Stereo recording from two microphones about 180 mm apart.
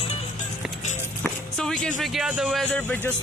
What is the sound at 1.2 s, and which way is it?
Music, 5° left (ahead or behind).